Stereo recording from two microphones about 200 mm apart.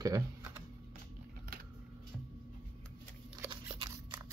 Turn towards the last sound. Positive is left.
turn(degrees=-25)  # may be behind; listen again after turning